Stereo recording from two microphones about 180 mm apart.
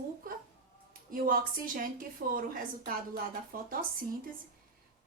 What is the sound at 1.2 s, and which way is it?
Speech, 50° right (ahead or behind).